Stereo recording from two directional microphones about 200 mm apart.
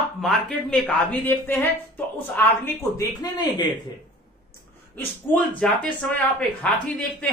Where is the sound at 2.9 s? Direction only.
20° left (ahead or behind).